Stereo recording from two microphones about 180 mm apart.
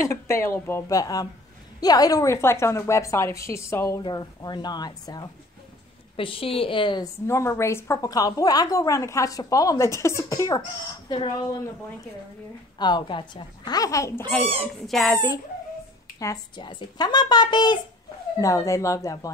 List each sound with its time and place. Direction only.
0.1 s a woman's voice: 15° left (ahead or behind)
12.7 s a woman's voice: 25° left (ahead or behind)
14.6 s speech: centre (ahead or behind)
16.2 s a woman's voice: 20° left (ahead or behind)